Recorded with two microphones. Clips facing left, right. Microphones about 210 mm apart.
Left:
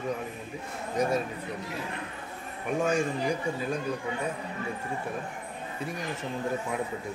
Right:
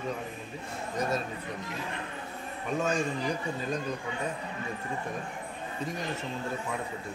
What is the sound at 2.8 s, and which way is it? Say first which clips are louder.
Speech: left 3 dB; 10° left (ahead or behind).